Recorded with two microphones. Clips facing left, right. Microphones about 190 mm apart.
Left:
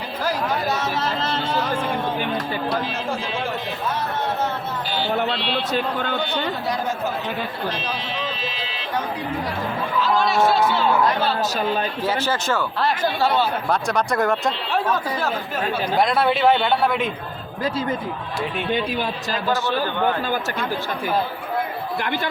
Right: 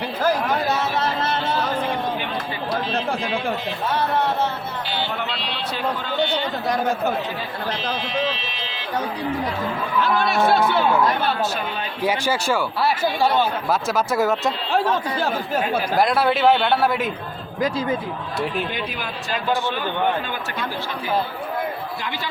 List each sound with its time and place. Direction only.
5.7 s a man's voice: 55° left (ahead or behind)
10.0 s speech: 60° right (ahead or behind)
11.3 s speech: 40° left (ahead or behind)
12.0 s a man's voice: 10° right (ahead or behind)
16.0 s a man's voice: centre (ahead or behind)
18.7 s speech: 30° left (ahead or behind)